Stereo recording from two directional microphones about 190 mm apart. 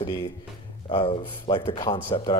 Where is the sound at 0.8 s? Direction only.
35° left (ahead or behind).